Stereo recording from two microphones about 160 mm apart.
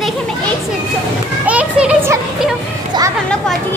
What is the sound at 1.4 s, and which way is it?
Children playing, 10° right (ahead or behind).